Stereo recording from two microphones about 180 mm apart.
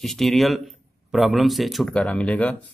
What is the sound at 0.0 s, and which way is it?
A man's voice, centre (ahead or behind).